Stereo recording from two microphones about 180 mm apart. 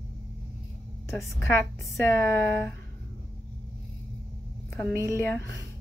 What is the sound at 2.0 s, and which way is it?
Speech, 15° left (ahead or behind).